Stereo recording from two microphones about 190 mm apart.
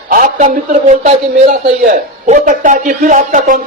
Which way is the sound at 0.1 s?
45° right (ahead or behind).